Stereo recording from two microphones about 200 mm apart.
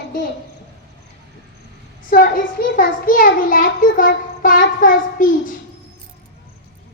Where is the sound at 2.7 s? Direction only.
45° left (ahead or behind).